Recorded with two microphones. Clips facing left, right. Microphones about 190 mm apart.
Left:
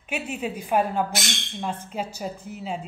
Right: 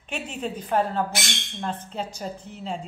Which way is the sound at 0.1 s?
10° left (ahead or behind).